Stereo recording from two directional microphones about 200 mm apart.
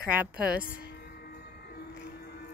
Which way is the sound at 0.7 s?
50° left (ahead or behind).